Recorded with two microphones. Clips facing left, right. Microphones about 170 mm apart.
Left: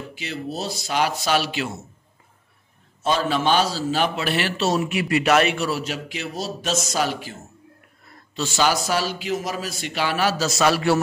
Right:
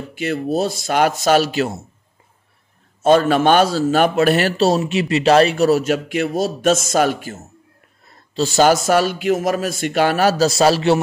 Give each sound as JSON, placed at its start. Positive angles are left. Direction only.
{"t": 0.1, "sound": "a man's voice", "side_deg": -50}
{"t": 3.0, "sound": "a man's voice", "side_deg": -50}
{"t": 8.4, "sound": "a man's voice", "side_deg": -40}